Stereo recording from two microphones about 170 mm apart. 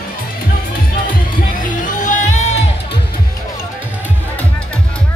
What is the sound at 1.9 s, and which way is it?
Music, 50° left (ahead or behind).